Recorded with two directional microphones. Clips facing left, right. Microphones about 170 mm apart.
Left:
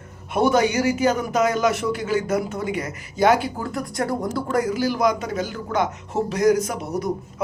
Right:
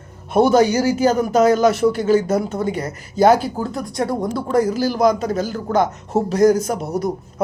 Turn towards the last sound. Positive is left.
turn(degrees=-35)  # may be behind; listen again after turning